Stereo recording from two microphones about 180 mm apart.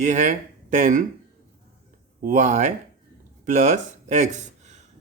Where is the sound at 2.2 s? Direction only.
45° right (ahead or behind).